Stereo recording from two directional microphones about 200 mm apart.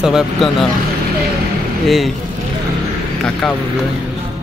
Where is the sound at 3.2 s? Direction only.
5° left (ahead or behind).